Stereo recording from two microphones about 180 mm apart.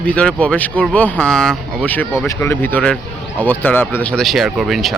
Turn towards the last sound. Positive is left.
turn(degrees=0)  # may be behind; listen again after turning